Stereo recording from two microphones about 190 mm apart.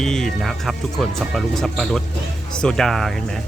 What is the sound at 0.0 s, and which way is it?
Speech, 5° left (ahead or behind).